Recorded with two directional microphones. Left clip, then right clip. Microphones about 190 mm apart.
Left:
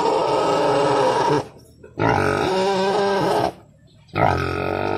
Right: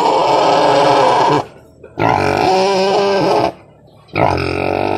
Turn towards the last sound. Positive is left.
turn(degrees=-35)  # may be behind; listen again after turning